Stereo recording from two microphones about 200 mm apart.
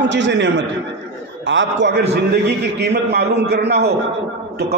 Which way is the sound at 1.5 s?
65° right (ahead or behind).